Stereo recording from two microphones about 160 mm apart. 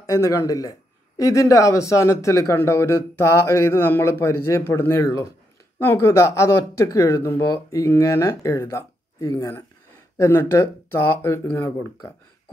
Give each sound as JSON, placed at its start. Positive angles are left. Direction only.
{"t": 0.0, "sound": "a man's voice", "side_deg": 20}